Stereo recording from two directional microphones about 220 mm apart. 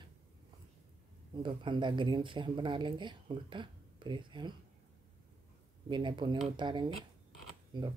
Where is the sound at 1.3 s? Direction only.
20° right (ahead or behind).